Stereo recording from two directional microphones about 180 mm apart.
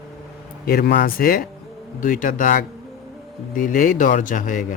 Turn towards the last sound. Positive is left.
turn(degrees=50)  # may be behind; listen again after turning